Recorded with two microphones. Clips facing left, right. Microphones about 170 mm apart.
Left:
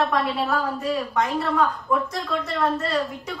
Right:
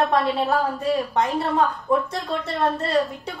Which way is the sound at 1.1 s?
30° right (ahead or behind).